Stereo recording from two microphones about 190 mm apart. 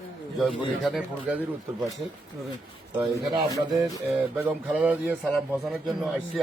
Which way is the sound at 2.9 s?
20° right (ahead or behind).